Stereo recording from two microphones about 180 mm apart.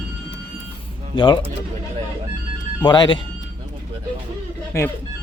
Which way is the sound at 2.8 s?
25° left (ahead or behind).